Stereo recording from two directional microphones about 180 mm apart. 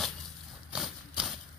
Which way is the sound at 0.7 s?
5° right (ahead or behind).